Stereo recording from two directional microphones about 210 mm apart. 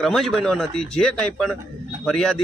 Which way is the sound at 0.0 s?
Centre (ahead or behind).